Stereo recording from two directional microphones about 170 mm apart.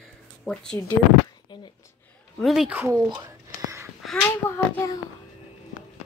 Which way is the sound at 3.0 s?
25° right (ahead or behind).